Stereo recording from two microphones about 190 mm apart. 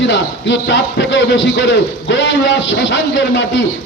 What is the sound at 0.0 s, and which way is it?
A man's voice, 70° left (ahead or behind).